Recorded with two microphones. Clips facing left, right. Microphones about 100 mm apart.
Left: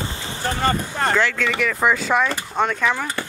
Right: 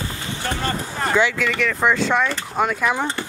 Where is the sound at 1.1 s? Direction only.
10° right (ahead or behind).